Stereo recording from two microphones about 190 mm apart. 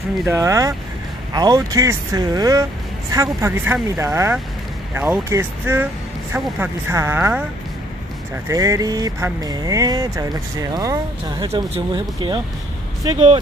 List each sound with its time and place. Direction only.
0.2 s speech: 15° right (ahead or behind)
8.5 s speech: 15° right (ahead or behind)